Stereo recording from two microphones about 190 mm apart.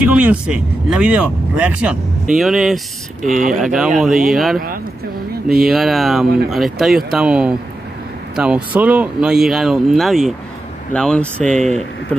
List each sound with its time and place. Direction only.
0.0 s speech: 5° right (ahead or behind)
3.3 s speech: 45° right (ahead or behind)
3.5 s speech: centre (ahead or behind)
5.7 s speech: centre (ahead or behind)